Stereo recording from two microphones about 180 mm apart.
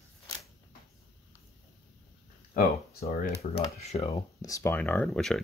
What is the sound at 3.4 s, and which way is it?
Speech, 35° left (ahead or behind).